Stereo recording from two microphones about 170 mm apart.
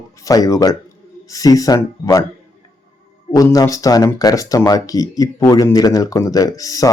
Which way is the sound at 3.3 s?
20° left (ahead or behind).